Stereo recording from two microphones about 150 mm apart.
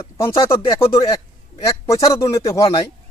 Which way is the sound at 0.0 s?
20° left (ahead or behind).